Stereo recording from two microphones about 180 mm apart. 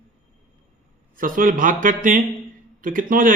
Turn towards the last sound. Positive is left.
turn(degrees=-50)  # may be behind; listen again after turning